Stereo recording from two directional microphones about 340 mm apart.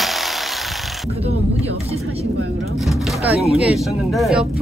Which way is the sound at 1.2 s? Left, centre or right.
Centre.